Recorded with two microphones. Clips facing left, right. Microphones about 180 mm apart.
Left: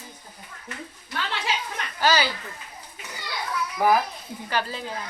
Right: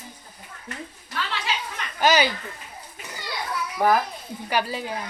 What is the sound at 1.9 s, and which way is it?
Speech, 20° right (ahead or behind).